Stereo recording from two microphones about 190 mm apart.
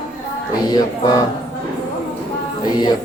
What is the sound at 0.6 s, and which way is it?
Music, 20° left (ahead or behind).